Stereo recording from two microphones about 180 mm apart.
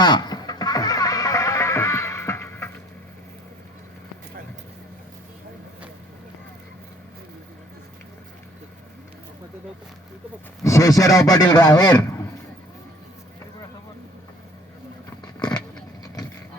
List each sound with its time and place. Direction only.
0.0 s music: 25° left (ahead or behind)
10.6 s speech: 15° left (ahead or behind)
11.9 s a sound: 15° left (ahead or behind)